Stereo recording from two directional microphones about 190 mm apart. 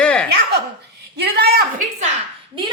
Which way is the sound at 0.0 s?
5° left (ahead or behind).